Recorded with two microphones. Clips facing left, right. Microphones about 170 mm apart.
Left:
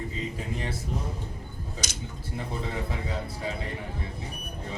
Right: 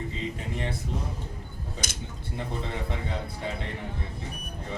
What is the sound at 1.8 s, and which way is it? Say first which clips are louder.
Speech: even; 55° right (ahead or behind).